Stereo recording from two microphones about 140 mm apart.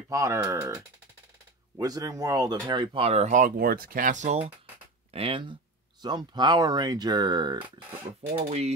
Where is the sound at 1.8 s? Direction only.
25° right (ahead or behind); by 4.5 s 55° right (ahead or behind).